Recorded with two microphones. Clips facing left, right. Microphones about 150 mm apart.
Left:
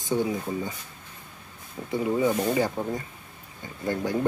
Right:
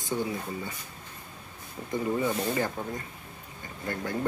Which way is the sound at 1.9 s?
15° left (ahead or behind).